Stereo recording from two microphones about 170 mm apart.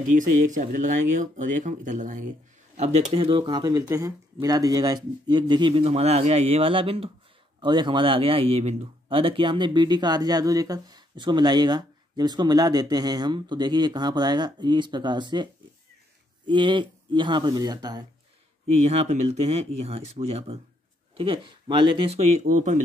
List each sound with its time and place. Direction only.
0.0 s speech: 50° right (ahead or behind); by 15.4 s 25° right (ahead or behind)
16.4 s speech: 30° right (ahead or behind)
18.8 s speech: 40° right (ahead or behind)